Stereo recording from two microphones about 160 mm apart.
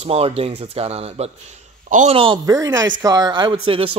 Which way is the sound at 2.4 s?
20° right (ahead or behind).